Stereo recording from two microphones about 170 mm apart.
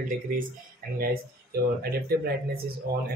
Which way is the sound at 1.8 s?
65° right (ahead or behind).